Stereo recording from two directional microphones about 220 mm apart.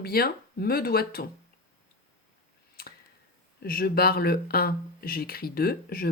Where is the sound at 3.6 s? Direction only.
45° left (ahead or behind).